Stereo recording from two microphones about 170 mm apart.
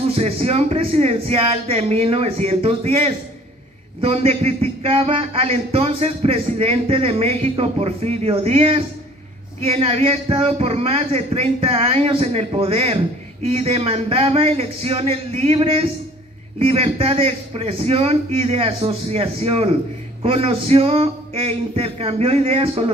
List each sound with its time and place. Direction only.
0.1 s speech: 35° right (ahead or behind)